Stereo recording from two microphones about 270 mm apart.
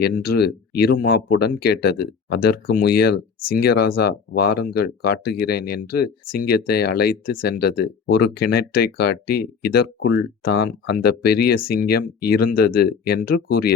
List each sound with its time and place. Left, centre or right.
0.0 s speech: left